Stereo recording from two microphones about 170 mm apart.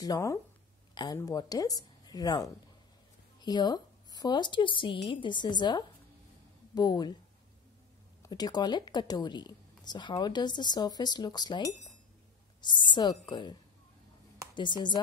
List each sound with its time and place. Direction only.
0.0 s a woman's voice: 20° left (ahead or behind)
8.2 s a woman's voice: 25° left (ahead or behind)